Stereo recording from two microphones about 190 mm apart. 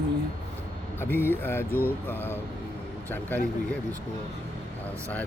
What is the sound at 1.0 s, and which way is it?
Speech, 10° left (ahead or behind).